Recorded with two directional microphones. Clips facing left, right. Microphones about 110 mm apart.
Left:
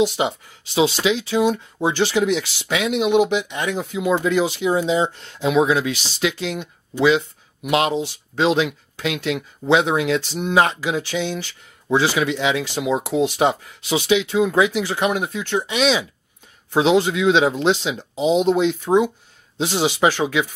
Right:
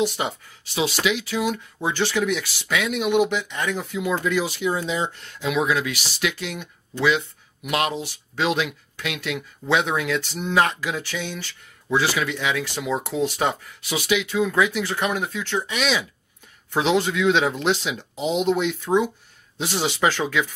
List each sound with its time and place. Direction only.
1.0 s speech: 25° left (ahead or behind)